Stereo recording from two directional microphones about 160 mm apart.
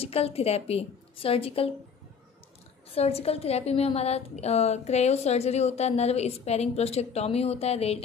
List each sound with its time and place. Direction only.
0.0 s a woman's voice: 40° left (ahead or behind)
2.9 s a woman's voice: 40° left (ahead or behind)